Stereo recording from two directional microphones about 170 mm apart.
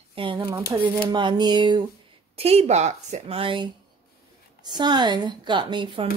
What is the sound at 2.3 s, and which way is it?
Speech, 40° right (ahead or behind).